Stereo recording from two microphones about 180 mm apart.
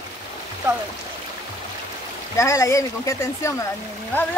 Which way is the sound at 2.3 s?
15° left (ahead or behind).